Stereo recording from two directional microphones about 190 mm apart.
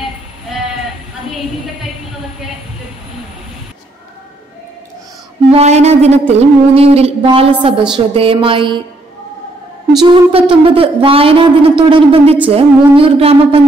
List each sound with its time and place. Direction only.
5.5 s a sound: 35° right (ahead or behind)
8.1 s speech: 30° right (ahead or behind)
10.0 s speech: 25° right (ahead or behind)